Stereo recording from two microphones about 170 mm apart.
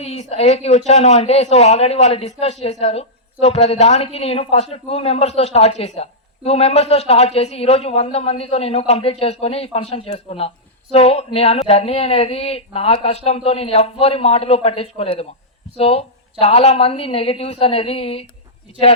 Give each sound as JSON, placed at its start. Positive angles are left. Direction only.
{"t": 0.0, "sound": "speech", "side_deg": 40}